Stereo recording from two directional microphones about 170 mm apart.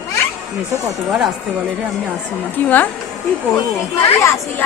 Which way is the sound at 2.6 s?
10° left (ahead or behind).